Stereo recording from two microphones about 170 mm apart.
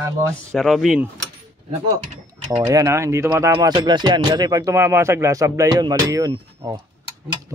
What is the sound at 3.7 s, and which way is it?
Speech, 25° right (ahead or behind).